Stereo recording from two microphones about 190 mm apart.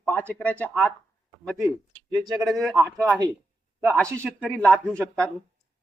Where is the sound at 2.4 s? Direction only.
Centre (ahead or behind).